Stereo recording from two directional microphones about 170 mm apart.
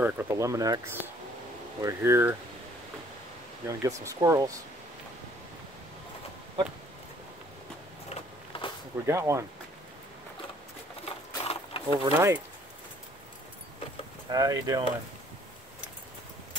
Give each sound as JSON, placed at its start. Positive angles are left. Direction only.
{"t": 0.0, "sound": "speech", "side_deg": -15}
{"t": 3.6, "sound": "speech", "side_deg": -20}
{"t": 8.1, "sound": "a sound", "side_deg": 30}
{"t": 9.0, "sound": "speech", "side_deg": -15}
{"t": 11.1, "sound": "a sound", "side_deg": 35}
{"t": 12.1, "sound": "speech", "side_deg": -15}
{"t": 14.3, "sound": "speech", "side_deg": -20}